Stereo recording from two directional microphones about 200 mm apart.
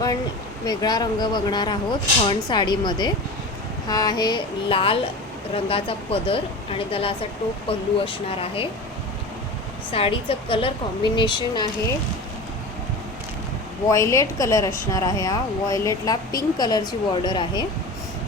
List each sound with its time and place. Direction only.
0.6 s speech: 20° left (ahead or behind)
9.9 s speech: 30° left (ahead or behind)
13.9 s a woman's voice: 15° left (ahead or behind)